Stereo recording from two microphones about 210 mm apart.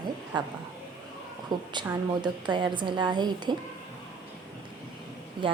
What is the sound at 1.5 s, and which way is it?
A woman's voice, 20° right (ahead or behind).